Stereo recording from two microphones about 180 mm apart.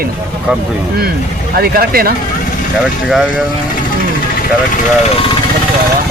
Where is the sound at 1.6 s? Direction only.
55° right (ahead or behind).